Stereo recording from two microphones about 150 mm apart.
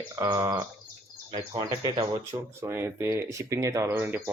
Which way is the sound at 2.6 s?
15° right (ahead or behind).